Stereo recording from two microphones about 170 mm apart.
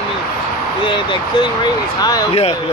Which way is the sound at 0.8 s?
30° left (ahead or behind).